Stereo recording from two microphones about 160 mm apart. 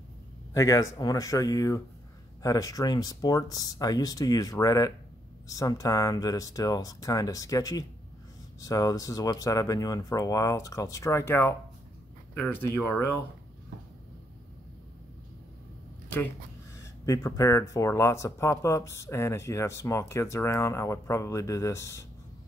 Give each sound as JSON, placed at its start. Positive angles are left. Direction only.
{"t": 0.6, "sound": "speech", "side_deg": 20}
{"t": 17.0, "sound": "speech", "side_deg": 20}